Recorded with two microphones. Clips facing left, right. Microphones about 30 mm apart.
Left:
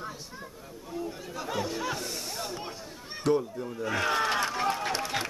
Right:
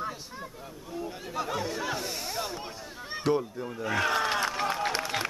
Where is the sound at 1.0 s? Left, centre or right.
Right.